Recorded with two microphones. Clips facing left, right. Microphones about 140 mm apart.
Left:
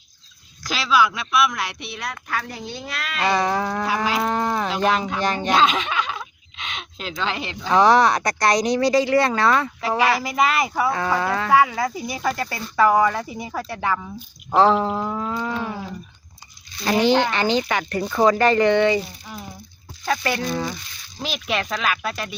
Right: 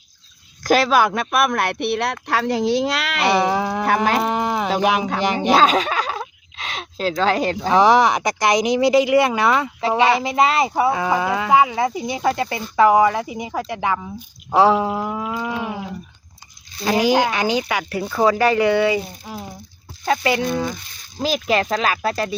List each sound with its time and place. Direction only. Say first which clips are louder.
0.6 s speech: right 5 dB; 50° right (ahead or behind); by 3.3 s 80° right
3.3 s speech: right 2 dB; 15° right (ahead or behind)
3.8 s speech: right 8 dB; 55° right (ahead or behind)
4.2 s livestock: right 2 dB; 15° right (ahead or behind)
4.8 s speech: right 1 dB; 15° right (ahead or behind)
5.5 s a sound: right 4 dB; 40° right (ahead or behind)
7.7 s speech: right 1 dB; 15° right (ahead or behind)
10.9 s speech: right 2 dB; 15° right (ahead or behind)
19.2 s speech: right 4 dB; 25° right (ahead or behind)
20.4 s speech: right 3 dB; 5° right (ahead or behind)
21.2 s speech: right 6 dB; 35° right (ahead or behind)